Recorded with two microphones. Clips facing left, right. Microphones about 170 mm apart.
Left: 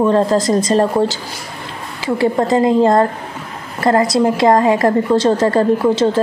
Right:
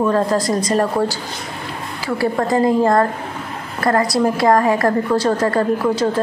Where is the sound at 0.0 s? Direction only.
25° left (ahead or behind).